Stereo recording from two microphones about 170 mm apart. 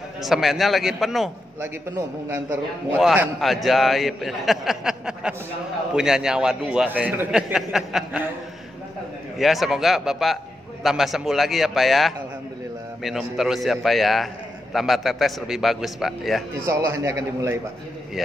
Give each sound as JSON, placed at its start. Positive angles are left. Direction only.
{"t": 0.2, "sound": "a man's voice", "side_deg": 0}
{"t": 1.6, "sound": "a man's voice", "side_deg": -15}
{"t": 9.4, "sound": "a man's voice", "side_deg": 0}
{"t": 16.6, "sound": "a man's voice", "side_deg": -15}